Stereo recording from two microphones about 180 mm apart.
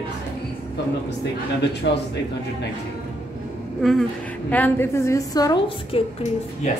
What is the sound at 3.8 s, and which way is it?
A woman's voice, centre (ahead or behind).